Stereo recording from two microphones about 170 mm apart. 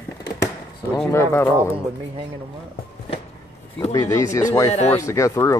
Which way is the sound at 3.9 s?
20° left (ahead or behind).